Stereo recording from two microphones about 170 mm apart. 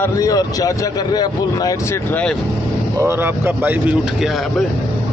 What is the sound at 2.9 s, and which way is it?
Speech, 15° right (ahead or behind).